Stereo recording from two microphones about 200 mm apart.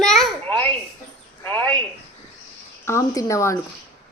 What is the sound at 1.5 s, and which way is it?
Speech, 10° left (ahead or behind).